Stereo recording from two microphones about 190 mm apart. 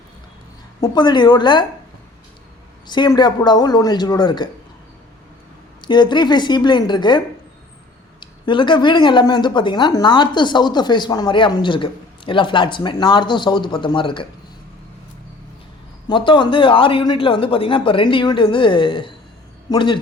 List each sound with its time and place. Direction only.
0.8 s speech: 20° left (ahead or behind)
2.8 s speech: 25° left (ahead or behind)
5.8 s speech: 25° left (ahead or behind)
8.2 s speech: 25° left (ahead or behind)
16.0 s speech: 25° left (ahead or behind)